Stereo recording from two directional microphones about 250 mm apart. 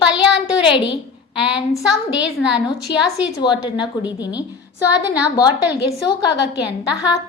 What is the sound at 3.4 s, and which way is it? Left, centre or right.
A woman's voice, centre.